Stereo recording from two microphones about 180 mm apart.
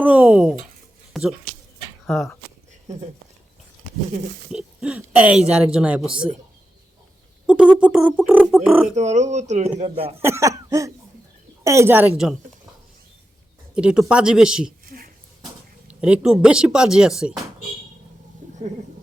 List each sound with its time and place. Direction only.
0.0 s a sound: 10° right (ahead or behind)
1.1 s speech: centre (ahead or behind)
4.5 s speech: 5° right (ahead or behind)
7.4 s speech: 5° right (ahead or behind)
9.0 s speech: 40° right (ahead or behind)
10.2 s cough: 15° right (ahead or behind)
13.7 s speech: 5° right (ahead or behind)
14.8 s a sound: 55° right (ahead or behind)
15.9 s speech: 5° right (ahead or behind)